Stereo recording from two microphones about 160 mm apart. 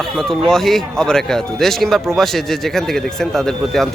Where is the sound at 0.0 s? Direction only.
Centre (ahead or behind).